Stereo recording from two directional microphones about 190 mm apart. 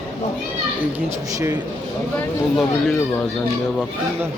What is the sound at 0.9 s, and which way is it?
Speech, 15° right (ahead or behind).